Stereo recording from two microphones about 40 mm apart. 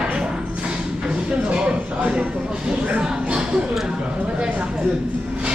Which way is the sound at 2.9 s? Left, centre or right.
Right.